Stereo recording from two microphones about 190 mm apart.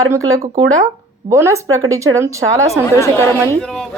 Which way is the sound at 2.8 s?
15° left (ahead or behind).